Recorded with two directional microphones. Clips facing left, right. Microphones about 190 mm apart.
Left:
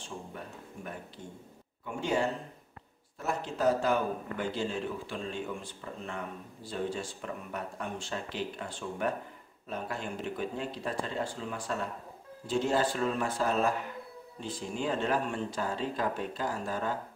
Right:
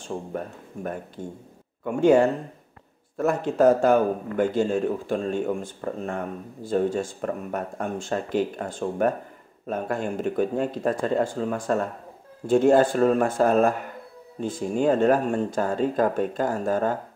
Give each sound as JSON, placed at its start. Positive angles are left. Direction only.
{"t": 0.0, "sound": "a man's voice", "side_deg": -50}